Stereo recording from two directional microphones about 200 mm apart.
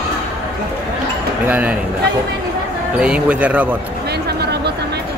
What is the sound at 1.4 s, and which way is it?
Speech, 10° right (ahead or behind).